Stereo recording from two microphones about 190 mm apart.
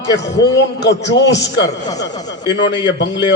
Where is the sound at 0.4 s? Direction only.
65° left (ahead or behind).